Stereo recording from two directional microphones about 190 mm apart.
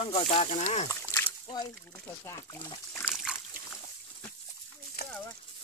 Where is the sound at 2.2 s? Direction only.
15° left (ahead or behind).